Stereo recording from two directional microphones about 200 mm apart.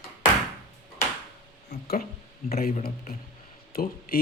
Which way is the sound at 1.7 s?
50° left (ahead or behind).